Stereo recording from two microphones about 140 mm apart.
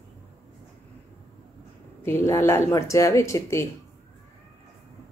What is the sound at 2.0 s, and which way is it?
Speech, 20° left (ahead or behind).